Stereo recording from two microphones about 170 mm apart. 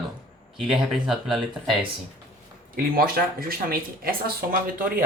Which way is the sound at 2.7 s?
60° right (ahead or behind).